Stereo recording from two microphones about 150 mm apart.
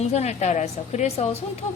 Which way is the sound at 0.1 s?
45° left (ahead or behind).